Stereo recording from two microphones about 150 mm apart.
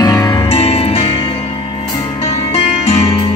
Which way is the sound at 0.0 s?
25° left (ahead or behind).